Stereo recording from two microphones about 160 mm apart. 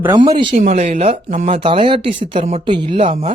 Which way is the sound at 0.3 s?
30° right (ahead or behind).